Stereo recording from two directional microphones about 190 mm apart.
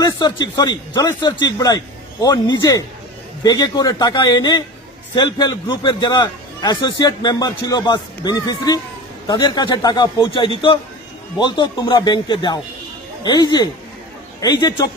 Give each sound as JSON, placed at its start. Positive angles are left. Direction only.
{"t": 0.0, "sound": "a man's voice", "side_deg": 20}